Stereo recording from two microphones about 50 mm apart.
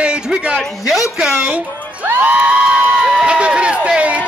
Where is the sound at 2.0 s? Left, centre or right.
Right.